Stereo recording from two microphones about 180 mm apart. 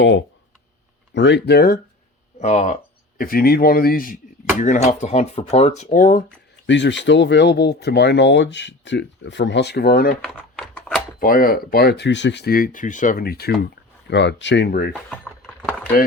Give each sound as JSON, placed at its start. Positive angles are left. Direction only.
{"t": 1.1, "sound": "speech", "side_deg": 75}
{"t": 2.4, "sound": "speech", "side_deg": 35}
{"t": 3.2, "sound": "speech", "side_deg": 55}
{"t": 6.7, "sound": "speech", "side_deg": 85}
{"t": 10.2, "sound": "a sound", "side_deg": 5}
{"t": 11.2, "sound": "speech", "side_deg": 50}
{"t": 14.1, "sound": "speech", "side_deg": 80}
{"t": 15.1, "sound": "keys jangling", "side_deg": 5}